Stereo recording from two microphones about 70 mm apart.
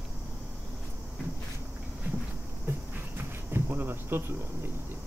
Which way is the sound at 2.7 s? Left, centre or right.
Right.